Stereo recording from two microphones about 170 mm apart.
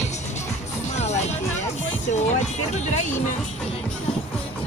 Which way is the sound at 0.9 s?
40° left (ahead or behind).